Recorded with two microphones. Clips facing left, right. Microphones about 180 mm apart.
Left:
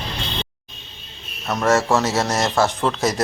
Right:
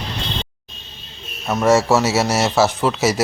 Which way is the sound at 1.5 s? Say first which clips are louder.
Right 3 dB; 10° right (ahead or behind).